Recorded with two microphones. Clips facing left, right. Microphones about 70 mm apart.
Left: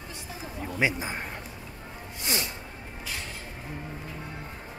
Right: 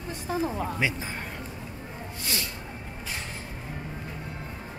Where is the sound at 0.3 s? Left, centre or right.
Right.